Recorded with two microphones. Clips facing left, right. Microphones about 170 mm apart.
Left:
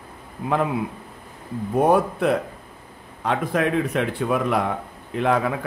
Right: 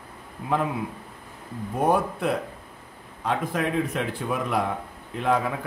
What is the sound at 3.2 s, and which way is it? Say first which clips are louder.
Speech: left 4 dB; 70° left (ahead or behind).